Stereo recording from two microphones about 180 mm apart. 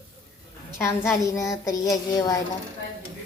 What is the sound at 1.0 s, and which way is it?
A woman's voice, 15° left (ahead or behind).